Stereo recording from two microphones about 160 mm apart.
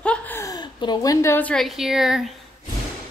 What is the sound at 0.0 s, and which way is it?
A woman's voice, 10° left (ahead or behind).